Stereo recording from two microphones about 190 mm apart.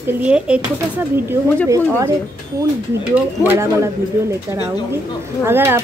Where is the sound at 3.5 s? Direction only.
15° right (ahead or behind).